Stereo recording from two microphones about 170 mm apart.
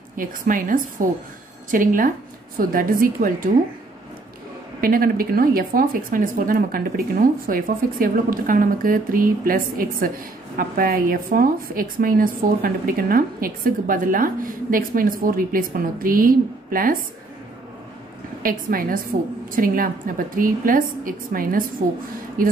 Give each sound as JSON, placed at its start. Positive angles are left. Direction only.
{"t": 0.2, "sound": "a woman's voice", "side_deg": -55}
{"t": 4.8, "sound": "speech", "side_deg": -60}
{"t": 18.4, "sound": "speech", "side_deg": -55}